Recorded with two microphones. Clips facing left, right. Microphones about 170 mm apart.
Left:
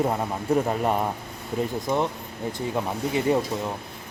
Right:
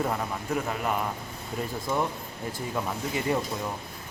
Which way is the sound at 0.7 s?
35° left (ahead or behind).